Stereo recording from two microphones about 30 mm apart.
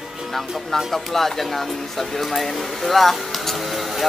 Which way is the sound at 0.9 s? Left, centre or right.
Centre.